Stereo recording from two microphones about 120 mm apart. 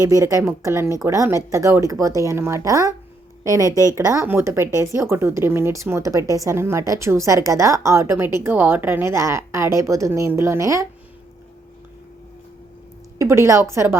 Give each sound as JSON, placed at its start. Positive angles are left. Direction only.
{"t": 0.0, "sound": "speech", "side_deg": -30}
{"t": 13.1, "sound": "speech", "side_deg": -25}